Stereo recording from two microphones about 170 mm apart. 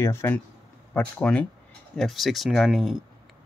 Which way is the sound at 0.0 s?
15° left (ahead or behind).